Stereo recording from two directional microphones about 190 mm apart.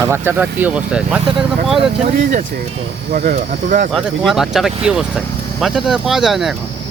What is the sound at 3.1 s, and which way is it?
Speech, 50° right (ahead or behind).